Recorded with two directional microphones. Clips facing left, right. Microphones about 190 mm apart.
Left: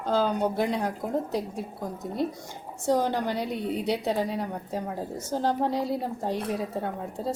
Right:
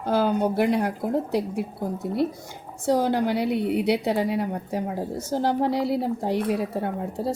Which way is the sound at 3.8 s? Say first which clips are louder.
Right 4 dB; 10° right (ahead or behind).